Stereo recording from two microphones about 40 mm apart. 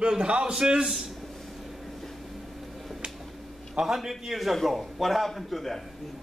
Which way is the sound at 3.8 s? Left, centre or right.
Centre.